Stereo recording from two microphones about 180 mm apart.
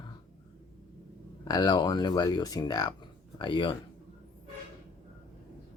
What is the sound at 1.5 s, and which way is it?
Speech, 25° left (ahead or behind).